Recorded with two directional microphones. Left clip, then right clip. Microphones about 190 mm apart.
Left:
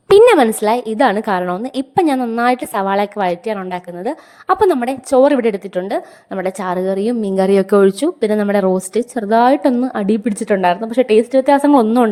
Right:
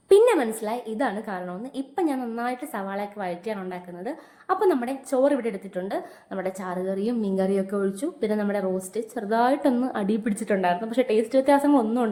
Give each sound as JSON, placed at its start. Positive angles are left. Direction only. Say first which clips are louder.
{"t": 0.1, "sound": "a woman's voice", "louder": "left 10 dB", "side_deg": 55}